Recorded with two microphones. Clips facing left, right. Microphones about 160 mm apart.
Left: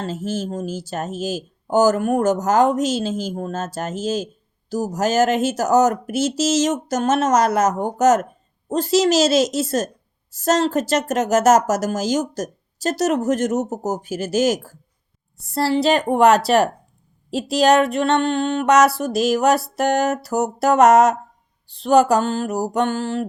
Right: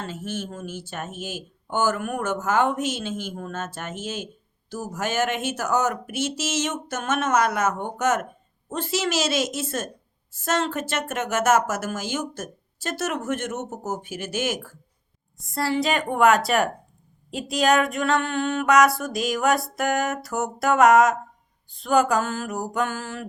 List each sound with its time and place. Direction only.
0.0 s speech: 35° left (ahead or behind)
17.5 s speech: 35° left (ahead or behind)